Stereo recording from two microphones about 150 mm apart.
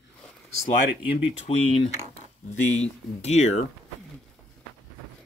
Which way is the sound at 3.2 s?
50° left (ahead or behind).